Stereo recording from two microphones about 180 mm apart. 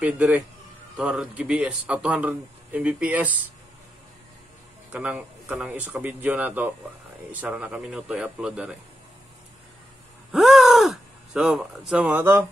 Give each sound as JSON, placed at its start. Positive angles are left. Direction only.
{"t": 0.0, "sound": "a man's voice", "side_deg": -10}
{"t": 4.9, "sound": "a man's voice", "side_deg": -10}
{"t": 10.3, "sound": "gasp", "side_deg": 0}